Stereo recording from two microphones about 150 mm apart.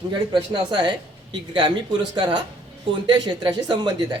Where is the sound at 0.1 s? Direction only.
30° right (ahead or behind).